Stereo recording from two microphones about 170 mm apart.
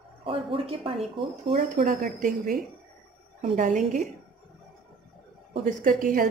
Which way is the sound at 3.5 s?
50° right (ahead or behind).